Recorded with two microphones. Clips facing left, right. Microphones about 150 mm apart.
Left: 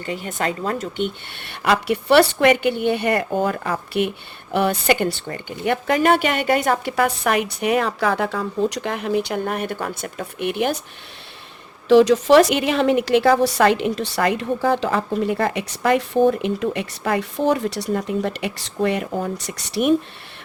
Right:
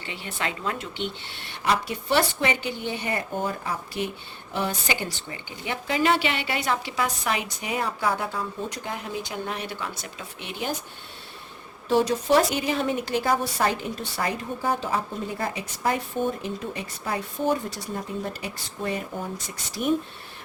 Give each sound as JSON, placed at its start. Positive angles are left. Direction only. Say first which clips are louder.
{"t": 0.0, "sound": "speech", "louder": "left 7 dB", "side_deg": 45}
{"t": 11.9, "sound": "a woman's voice", "louder": "left 9 dB", "side_deg": 90}